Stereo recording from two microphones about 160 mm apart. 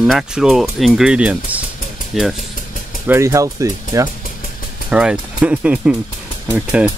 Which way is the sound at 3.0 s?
15° right (ahead or behind).